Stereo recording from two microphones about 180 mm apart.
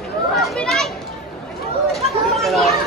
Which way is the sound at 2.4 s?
Centre (ahead or behind).